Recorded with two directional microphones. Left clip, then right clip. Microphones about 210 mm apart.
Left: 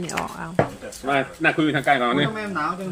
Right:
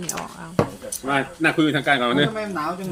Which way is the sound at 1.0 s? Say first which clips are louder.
Even; 45° right (ahead or behind).